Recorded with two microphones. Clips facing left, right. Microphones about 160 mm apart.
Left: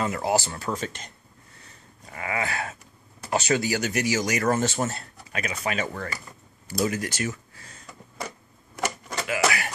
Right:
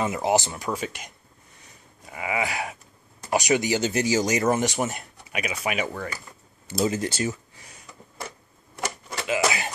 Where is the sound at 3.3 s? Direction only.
15° right (ahead or behind).